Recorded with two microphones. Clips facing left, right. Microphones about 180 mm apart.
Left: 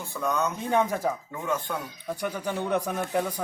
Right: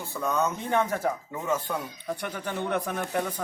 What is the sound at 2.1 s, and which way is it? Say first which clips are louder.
Speech: left 3 dB; 10° left (ahead or behind).